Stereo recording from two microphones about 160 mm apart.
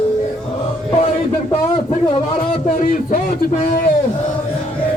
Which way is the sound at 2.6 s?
55° left (ahead or behind).